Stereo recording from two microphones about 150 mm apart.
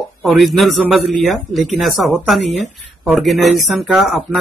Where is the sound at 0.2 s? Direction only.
Centre (ahead or behind).